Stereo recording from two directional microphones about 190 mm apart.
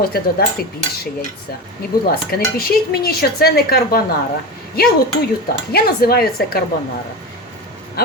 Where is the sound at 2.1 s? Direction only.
55° left (ahead or behind).